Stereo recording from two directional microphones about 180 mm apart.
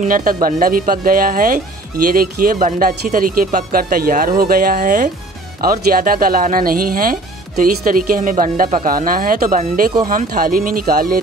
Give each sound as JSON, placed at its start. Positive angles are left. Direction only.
{"t": 0.0, "sound": "speech", "side_deg": -50}